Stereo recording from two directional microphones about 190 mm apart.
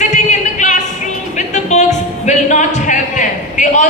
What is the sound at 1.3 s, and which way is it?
Music, 40° left (ahead or behind).